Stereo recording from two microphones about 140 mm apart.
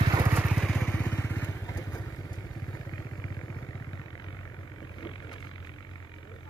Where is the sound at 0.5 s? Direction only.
5° left (ahead or behind); by 5.5 s 35° left (ahead or behind).